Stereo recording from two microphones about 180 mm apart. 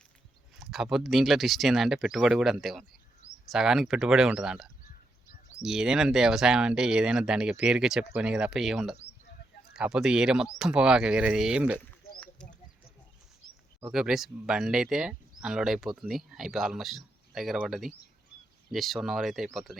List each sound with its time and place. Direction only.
0.5 s speech: centre (ahead or behind)
12.2 s a sound: 5° left (ahead or behind)
13.9 s speech: centre (ahead or behind)